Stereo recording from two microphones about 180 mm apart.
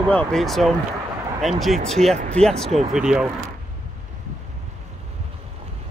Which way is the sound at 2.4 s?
5° left (ahead or behind).